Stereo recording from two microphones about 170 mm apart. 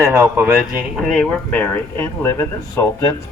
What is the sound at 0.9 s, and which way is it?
Speech, 5° left (ahead or behind).